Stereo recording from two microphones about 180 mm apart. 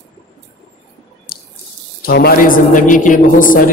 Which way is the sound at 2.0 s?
60° left (ahead or behind).